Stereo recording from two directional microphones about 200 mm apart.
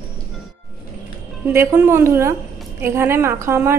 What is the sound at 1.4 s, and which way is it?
A woman's voice, 15° right (ahead or behind).